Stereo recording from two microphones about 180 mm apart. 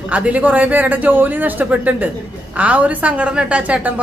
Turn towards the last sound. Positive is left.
turn(degrees=-5)  # may be behind; listen again after turning